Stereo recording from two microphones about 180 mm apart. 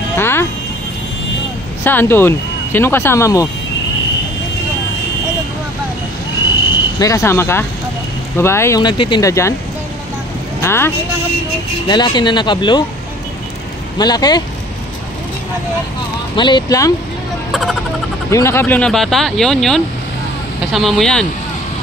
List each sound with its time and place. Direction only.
0.1 s music: 15° left (ahead or behind)
1.9 s speech: 10° left (ahead or behind)
7.0 s speech: 15° left (ahead or behind)
10.6 s speech: 15° left (ahead or behind)
11.9 s speech: 25° left (ahead or behind)
13.9 s speech: 20° left (ahead or behind)
16.3 s speech: 25° left (ahead or behind)
17.5 s a sound: centre (ahead or behind)
18.3 s speech: 15° left (ahead or behind)